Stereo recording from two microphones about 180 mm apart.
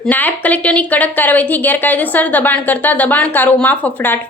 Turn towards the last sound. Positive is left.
turn(degrees=10)  # may be behind; listen again after turning